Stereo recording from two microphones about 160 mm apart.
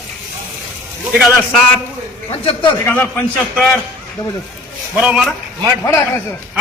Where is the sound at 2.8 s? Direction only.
10° left (ahead or behind).